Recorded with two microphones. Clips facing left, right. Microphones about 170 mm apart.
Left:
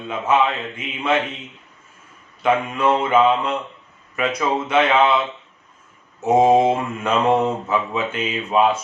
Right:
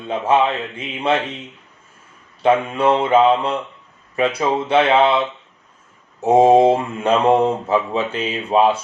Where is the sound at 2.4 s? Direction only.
30° right (ahead or behind).